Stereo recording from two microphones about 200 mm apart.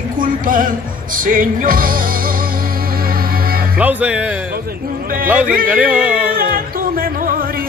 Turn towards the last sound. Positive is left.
turn(degrees=-45)  # may be behind; listen again after turning